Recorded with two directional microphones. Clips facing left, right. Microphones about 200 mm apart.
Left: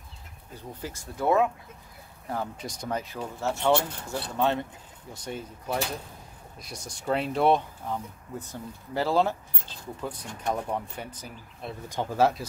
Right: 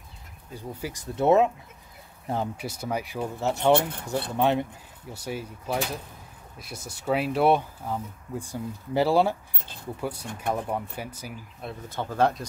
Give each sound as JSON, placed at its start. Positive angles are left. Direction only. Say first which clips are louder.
{"t": 0.6, "sound": "speech", "louder": "right 3 dB", "side_deg": -10}
{"t": 1.1, "sound": "speech", "louder": "right 4 dB", "side_deg": -25}
{"t": 2.5, "sound": "speech", "louder": "right 2 dB", "side_deg": -5}
{"t": 11.9, "sound": "speech", "louder": "even", "side_deg": 15}